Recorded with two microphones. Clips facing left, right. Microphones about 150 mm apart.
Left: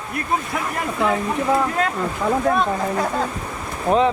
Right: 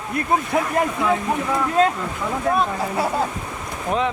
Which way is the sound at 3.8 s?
35° left (ahead or behind).